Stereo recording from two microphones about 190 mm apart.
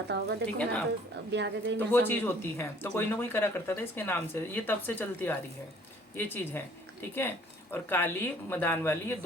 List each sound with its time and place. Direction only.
0.1 s a woman's voice: 65° right (ahead or behind)
0.4 s speech: 5° left (ahead or behind)
1.3 s speech: 65° right (ahead or behind)
1.9 s speech: 10° left (ahead or behind)